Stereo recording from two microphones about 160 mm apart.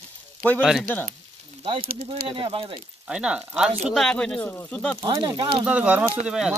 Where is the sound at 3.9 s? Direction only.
5° left (ahead or behind).